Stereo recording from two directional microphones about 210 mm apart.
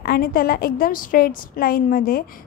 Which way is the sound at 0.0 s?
45° left (ahead or behind).